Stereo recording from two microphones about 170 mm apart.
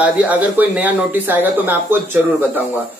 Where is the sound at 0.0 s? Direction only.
10° right (ahead or behind).